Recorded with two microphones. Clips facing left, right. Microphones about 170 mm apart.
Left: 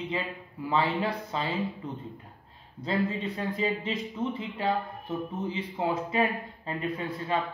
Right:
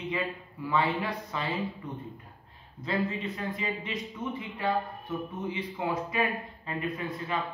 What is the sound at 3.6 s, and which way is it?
A man's voice, 30° left (ahead or behind).